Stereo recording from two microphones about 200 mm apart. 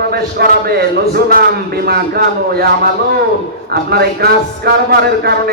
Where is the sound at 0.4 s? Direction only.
55° right (ahead or behind).